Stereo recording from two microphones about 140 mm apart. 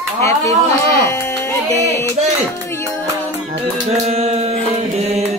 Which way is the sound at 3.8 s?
50° right (ahead or behind).